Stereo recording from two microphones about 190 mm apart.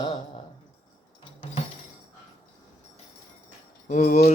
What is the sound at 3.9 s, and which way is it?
Speech, 50° left (ahead or behind).